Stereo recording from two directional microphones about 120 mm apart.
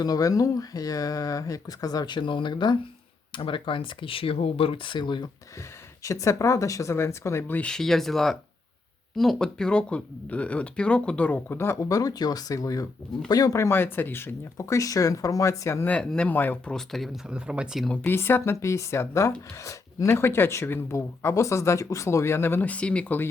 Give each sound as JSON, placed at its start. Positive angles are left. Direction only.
{"t": 0.0, "sound": "speech", "side_deg": 30}
{"t": 6.0, "sound": "speech", "side_deg": 25}
{"t": 16.7, "sound": "speech", "side_deg": 0}
{"t": 17.8, "sound": "speech", "side_deg": 15}